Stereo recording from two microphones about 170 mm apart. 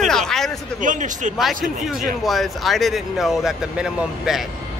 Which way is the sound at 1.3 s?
Centre (ahead or behind).